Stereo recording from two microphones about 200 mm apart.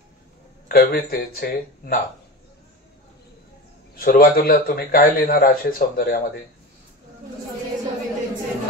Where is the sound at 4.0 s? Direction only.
45° left (ahead or behind).